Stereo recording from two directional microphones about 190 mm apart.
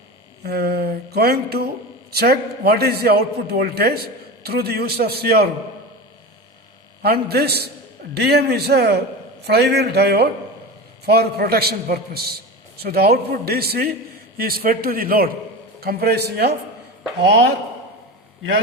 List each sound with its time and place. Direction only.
0.4 s a man's voice: 55° right (ahead or behind)
7.0 s a man's voice: 55° right (ahead or behind)